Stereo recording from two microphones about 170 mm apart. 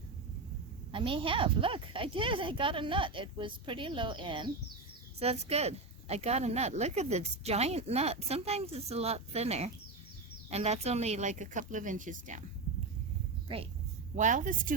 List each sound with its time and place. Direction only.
0.9 s a woman's voice: 30° right (ahead or behind); by 12.5 s 50° right (ahead or behind)
14.2 s speech: 50° right (ahead or behind)